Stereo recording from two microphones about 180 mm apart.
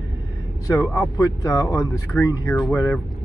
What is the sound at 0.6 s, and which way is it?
Speech, 20° left (ahead or behind).